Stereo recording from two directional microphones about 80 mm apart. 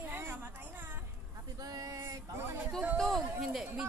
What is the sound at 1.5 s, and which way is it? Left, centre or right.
Speech, right.